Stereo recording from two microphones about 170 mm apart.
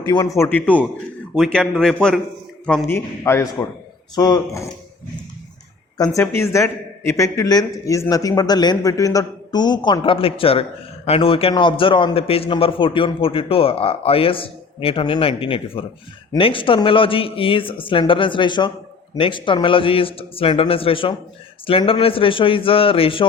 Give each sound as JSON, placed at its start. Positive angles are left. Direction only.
{"t": 0.0, "sound": "a man's voice", "side_deg": 20}
{"t": 6.1, "sound": "speech", "side_deg": 15}